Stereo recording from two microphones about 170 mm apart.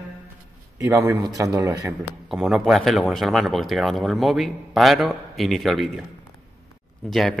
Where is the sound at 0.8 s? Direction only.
15° right (ahead or behind).